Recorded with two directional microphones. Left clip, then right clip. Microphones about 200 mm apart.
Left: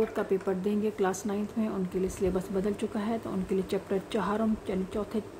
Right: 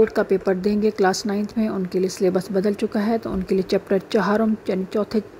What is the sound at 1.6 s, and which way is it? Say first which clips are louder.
Speech: right 10 dB; 25° right (ahead or behind).